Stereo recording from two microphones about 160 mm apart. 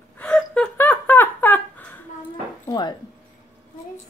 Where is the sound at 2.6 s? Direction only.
25° left (ahead or behind).